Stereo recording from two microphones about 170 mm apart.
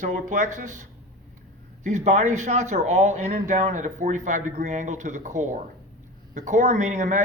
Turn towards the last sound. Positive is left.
turn(degrees=-45)  # may be behind; listen again after turning